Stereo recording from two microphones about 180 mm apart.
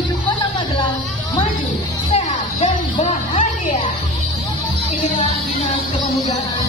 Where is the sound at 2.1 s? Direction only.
35° left (ahead or behind).